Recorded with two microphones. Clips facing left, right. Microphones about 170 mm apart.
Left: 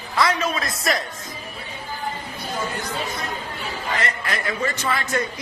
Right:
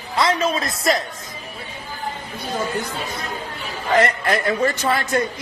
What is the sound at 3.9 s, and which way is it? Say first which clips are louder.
A man's voice: right 11 dB; 50° right (ahead or behind).